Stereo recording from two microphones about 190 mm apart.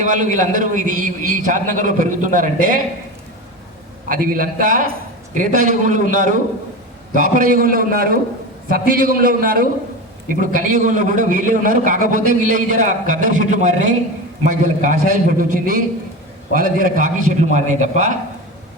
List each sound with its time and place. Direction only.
0.0 s a man's voice: 40° right (ahead or behind)
4.1 s a man's voice: 45° right (ahead or behind)